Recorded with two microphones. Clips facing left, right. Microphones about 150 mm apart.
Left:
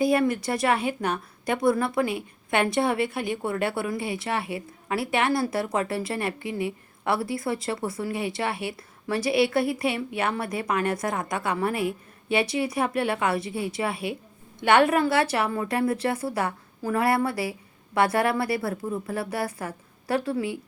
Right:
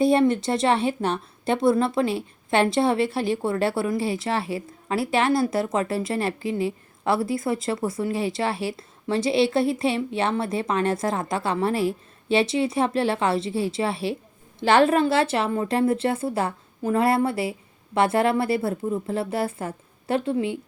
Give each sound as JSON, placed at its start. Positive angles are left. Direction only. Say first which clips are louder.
{"t": 0.0, "sound": "a woman's voice", "louder": "right 3 dB", "side_deg": -25}